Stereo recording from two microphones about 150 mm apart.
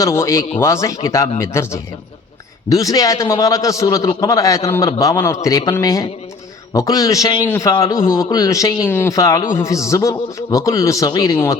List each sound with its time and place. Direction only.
0.0 s a man's voice: 20° left (ahead or behind)